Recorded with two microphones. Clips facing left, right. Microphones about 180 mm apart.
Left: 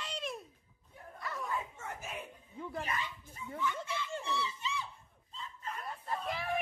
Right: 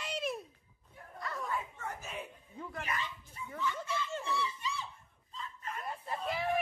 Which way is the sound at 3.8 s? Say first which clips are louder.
Right 2 dB; 20° left (ahead or behind).